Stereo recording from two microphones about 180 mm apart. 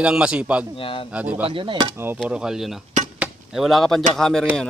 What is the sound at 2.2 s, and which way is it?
Hammer, 5° right (ahead or behind).